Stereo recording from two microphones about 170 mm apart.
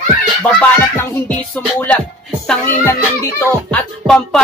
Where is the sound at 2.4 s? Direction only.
15° left (ahead or behind).